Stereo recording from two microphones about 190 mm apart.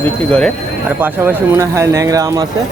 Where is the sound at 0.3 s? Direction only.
5° left (ahead or behind).